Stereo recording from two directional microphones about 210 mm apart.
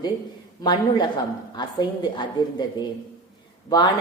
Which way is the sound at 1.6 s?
20° left (ahead or behind).